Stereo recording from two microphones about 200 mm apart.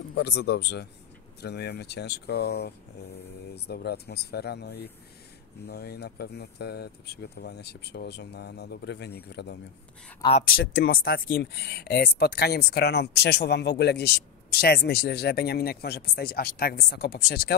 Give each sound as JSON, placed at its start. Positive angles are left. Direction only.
{"t": 0.1, "sound": "speech", "side_deg": 55}